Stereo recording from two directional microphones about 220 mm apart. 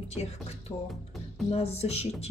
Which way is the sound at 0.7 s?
15° left (ahead or behind).